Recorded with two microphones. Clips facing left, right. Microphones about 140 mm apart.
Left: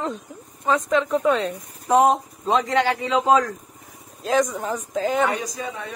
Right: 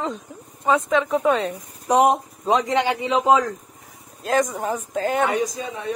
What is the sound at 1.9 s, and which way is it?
A man's voice, 15° right (ahead or behind).